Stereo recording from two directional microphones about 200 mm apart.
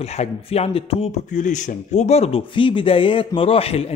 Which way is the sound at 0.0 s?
30° left (ahead or behind).